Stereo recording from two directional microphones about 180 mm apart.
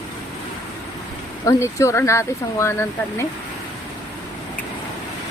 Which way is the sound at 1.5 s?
15° left (ahead or behind).